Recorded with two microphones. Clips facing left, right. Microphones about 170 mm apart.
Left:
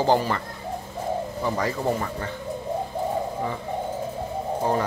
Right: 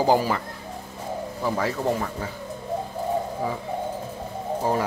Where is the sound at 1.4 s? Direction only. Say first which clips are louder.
Right 2 dB; centre (ahead or behind).